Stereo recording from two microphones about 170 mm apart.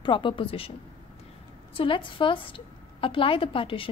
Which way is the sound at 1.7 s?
30° left (ahead or behind).